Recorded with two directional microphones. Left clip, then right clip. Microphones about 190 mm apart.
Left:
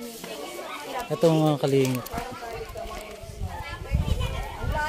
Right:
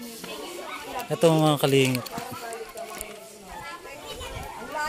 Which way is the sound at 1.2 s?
5° right (ahead or behind).